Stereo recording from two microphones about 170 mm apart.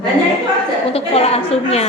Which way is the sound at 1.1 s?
35° left (ahead or behind).